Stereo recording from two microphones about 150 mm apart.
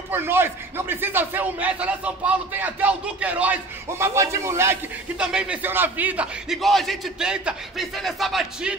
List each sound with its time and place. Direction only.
0.1 s a man's voice: 15° right (ahead or behind)
5.1 s a man's voice: 5° right (ahead or behind)